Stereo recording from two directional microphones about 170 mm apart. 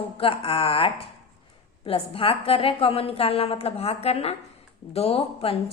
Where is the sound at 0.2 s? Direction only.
35° left (ahead or behind).